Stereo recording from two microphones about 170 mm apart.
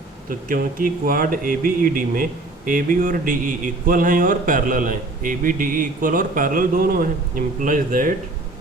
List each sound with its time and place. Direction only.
0.3 s speech: 55° right (ahead or behind)